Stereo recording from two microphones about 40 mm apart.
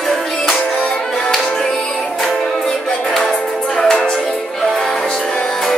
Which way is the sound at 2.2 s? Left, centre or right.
Centre.